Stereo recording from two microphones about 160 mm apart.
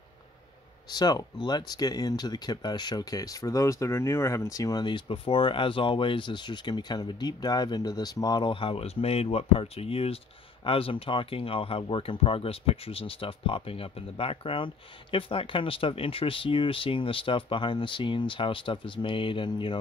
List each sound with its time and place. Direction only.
0.9 s speech: 25° left (ahead or behind)